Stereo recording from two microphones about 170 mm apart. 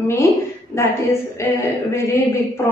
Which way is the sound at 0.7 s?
15° left (ahead or behind).